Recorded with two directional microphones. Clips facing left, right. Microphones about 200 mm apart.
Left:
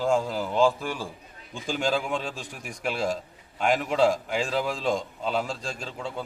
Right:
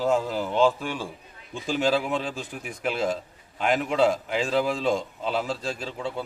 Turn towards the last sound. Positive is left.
turn(degrees=-5)  # may be behind; listen again after turning